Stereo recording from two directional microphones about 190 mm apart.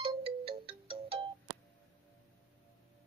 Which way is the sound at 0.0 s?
30° right (ahead or behind).